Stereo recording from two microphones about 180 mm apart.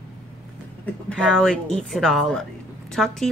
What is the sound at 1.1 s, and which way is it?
Speech, 5° left (ahead or behind).